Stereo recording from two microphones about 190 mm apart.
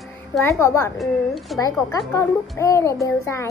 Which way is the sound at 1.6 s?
15° left (ahead or behind).